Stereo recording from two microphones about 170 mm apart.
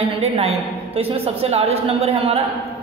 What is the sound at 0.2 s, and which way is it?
A woman's voice, 35° right (ahead or behind).